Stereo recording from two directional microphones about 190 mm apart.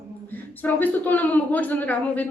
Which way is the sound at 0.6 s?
10° left (ahead or behind).